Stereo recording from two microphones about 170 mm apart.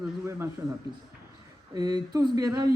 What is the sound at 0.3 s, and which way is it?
A man's voice, 15° right (ahead or behind).